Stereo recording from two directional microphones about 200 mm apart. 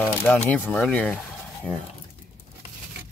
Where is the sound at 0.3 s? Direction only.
10° left (ahead or behind).